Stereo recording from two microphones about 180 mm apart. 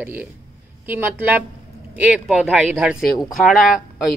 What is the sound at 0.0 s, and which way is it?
A man's voice, 10° right (ahead or behind).